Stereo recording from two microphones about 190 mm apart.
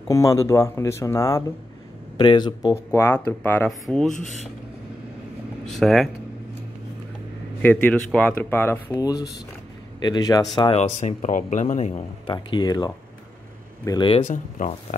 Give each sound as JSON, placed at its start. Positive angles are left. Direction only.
{"t": 0.1, "sound": "speech", "side_deg": 15}
{"t": 5.7, "sound": "speech", "side_deg": 0}
{"t": 7.6, "sound": "speech", "side_deg": 10}
{"t": 9.0, "sound": "speech", "side_deg": 20}
{"t": 12.3, "sound": "speech", "side_deg": 25}
{"t": 14.3, "sound": "speech", "side_deg": 40}